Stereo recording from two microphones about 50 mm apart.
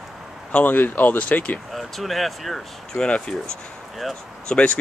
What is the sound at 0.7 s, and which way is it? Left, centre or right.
Speech, left.